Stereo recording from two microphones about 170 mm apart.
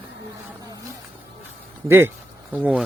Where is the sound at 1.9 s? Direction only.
15° right (ahead or behind).